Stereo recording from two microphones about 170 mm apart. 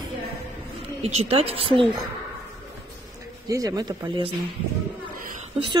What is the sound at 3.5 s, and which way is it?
Speech, 20° right (ahead or behind).